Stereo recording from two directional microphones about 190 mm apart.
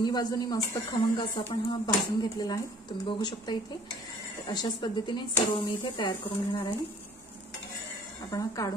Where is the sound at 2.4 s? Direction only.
20° left (ahead or behind).